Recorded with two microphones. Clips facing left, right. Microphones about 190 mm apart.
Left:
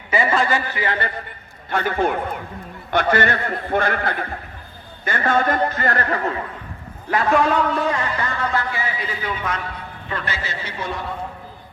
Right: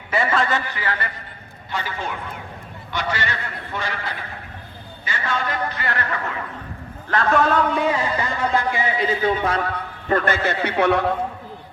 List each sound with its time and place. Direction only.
0.1 s a man's voice: centre (ahead or behind)
0.8 s a man's voice: 25° left (ahead or behind)
1.7 s a man's voice: 55° left (ahead or behind); by 6.3 s 40° left (ahead or behind)
7.1 s a man's voice: 5° left (ahead or behind); by 9.6 s 30° right (ahead or behind)
10.1 s a man's voice: 50° right (ahead or behind); by 11.1 s 70° right (ahead or behind)